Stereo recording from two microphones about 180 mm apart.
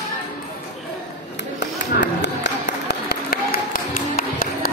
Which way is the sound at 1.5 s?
80° left.